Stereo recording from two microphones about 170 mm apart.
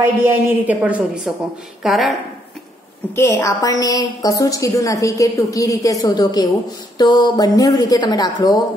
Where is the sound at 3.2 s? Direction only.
15° left (ahead or behind).